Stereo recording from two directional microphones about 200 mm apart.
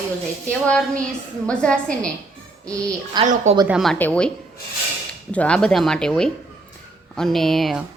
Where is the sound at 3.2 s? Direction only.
20° right (ahead or behind).